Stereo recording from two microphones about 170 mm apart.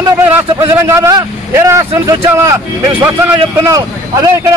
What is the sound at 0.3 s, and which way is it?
Speech, 15° right (ahead or behind).